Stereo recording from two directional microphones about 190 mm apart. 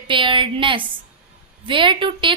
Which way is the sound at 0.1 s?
25° right (ahead or behind).